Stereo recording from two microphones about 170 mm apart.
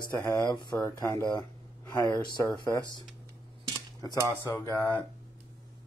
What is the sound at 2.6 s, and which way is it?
Speech, 25° left (ahead or behind).